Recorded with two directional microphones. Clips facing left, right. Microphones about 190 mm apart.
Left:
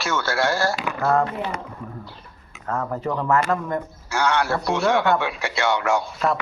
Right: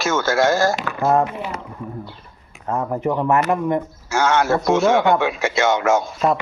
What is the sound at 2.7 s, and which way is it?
Speech, 15° right (ahead or behind).